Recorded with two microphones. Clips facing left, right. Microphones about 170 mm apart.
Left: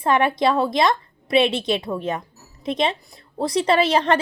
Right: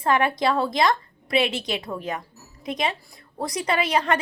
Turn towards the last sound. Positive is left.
turn(degrees=30)  # may be behind; listen again after turning